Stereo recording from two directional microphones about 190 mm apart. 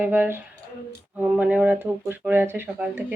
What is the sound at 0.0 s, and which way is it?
Speech, 10° right (ahead or behind).